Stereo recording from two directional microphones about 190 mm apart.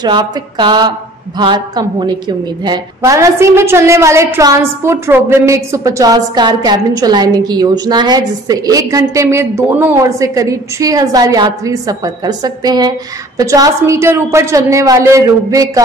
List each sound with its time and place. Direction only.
0.0 s a woman's voice: 25° right (ahead or behind)